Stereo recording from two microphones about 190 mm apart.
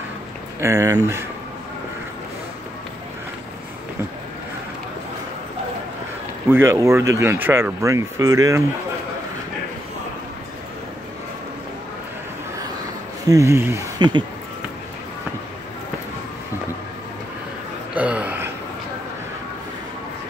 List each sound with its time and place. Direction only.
0.6 s speech: 15° right (ahead or behind)
6.5 s speech: 15° right (ahead or behind)
13.3 s speech: 15° right (ahead or behind)
17.9 s a sound: 5° right (ahead or behind)